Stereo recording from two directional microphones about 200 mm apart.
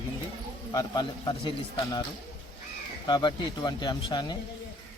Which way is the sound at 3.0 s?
20° left (ahead or behind).